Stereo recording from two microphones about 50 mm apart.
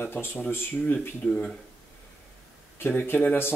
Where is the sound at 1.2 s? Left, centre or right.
Left.